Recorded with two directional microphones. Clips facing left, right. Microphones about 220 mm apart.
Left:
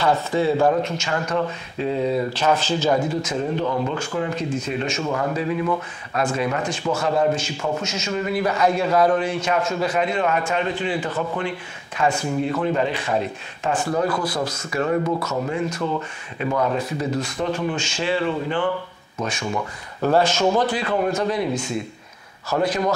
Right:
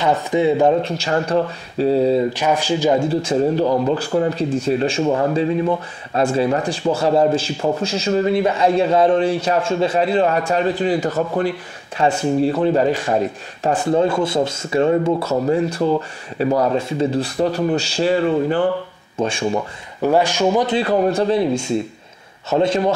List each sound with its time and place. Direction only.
0.0 s speech: 20° right (ahead or behind)
0.8 s speech: 35° right (ahead or behind)
2.3 s speech: 15° right (ahead or behind)
3.1 s speech: 30° right (ahead or behind)
13.8 s speech: 25° right (ahead or behind); by 18.6 s 40° right (ahead or behind)
19.1 s speech: 30° right (ahead or behind)
20.0 s speech: 15° right (ahead or behind)
20.7 s speech: 35° right (ahead or behind)
22.5 s speech: 25° right (ahead or behind)